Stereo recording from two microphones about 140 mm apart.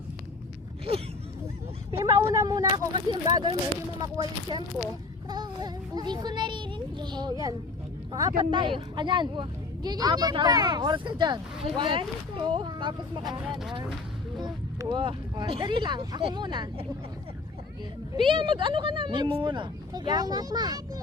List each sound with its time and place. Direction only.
0.9 s speech: 45° right (ahead or behind)
1.9 s speech: 25° right (ahead or behind)
13.5 s speech: centre (ahead or behind)
14.4 s speech: 30° right (ahead or behind)
18.2 s speech: 35° right (ahead or behind)